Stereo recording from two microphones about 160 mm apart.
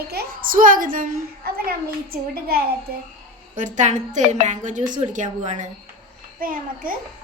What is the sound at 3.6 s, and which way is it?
A child's voice, 50° right (ahead or behind).